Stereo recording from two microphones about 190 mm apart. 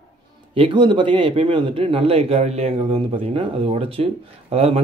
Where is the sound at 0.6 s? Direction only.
25° right (ahead or behind).